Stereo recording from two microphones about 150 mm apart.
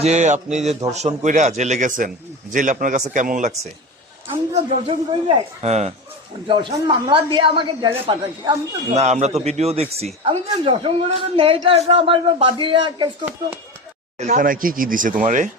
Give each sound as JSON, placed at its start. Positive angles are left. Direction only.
{"t": 0.0, "sound": "a man's voice", "side_deg": -50}
{"t": 4.5, "sound": "a man's voice", "side_deg": -40}
{"t": 6.5, "sound": "a man's voice", "side_deg": -30}
{"t": 9.0, "sound": "a man's voice", "side_deg": -50}
{"t": 14.2, "sound": "speech", "side_deg": -55}